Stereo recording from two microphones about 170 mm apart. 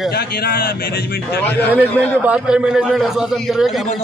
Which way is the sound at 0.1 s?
65° left (ahead or behind).